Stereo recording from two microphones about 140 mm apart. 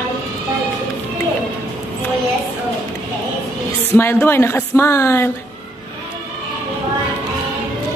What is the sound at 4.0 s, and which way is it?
Speech, 15° left (ahead or behind).